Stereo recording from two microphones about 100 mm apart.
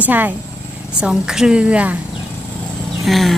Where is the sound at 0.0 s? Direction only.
15° right (ahead or behind).